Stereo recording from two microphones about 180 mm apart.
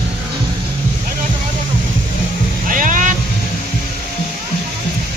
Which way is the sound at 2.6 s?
45° right (ahead or behind).